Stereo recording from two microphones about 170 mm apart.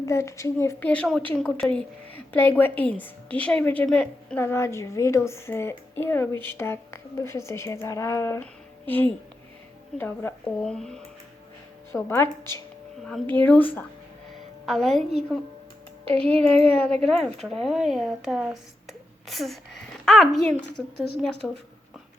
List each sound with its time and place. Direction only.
0.0 s a woman's voice: 15° left (ahead or behind)
12.0 s a woman's voice: 15° left (ahead or behind)